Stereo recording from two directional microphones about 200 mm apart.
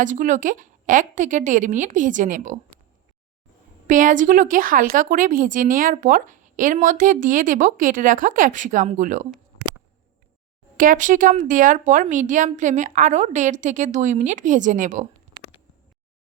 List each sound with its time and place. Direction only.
0.0 s a woman's voice: 40° right (ahead or behind)
3.8 s a woman's voice: 40° right (ahead or behind)
10.8 s a woman's voice: 40° right (ahead or behind)